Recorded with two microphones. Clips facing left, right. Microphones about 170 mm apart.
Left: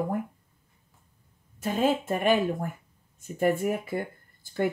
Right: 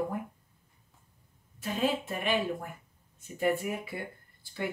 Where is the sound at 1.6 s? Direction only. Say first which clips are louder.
Left 5 dB; 45° left (ahead or behind).